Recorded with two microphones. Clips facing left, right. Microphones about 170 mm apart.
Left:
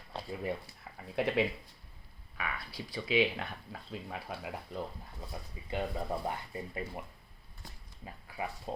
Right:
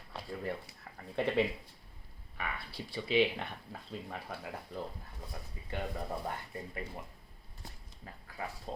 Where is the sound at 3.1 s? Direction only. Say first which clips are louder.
Even; 5° left (ahead or behind).